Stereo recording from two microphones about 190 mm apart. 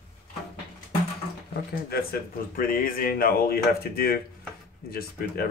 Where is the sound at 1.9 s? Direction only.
50° left (ahead or behind).